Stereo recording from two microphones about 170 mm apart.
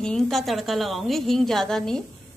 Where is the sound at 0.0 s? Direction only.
5° left (ahead or behind).